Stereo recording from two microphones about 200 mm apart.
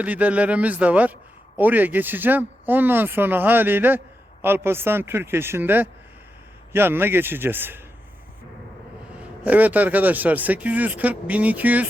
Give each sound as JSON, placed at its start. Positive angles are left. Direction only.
{"t": 0.0, "sound": "speech", "side_deg": -5}
{"t": 9.4, "sound": "speech", "side_deg": -10}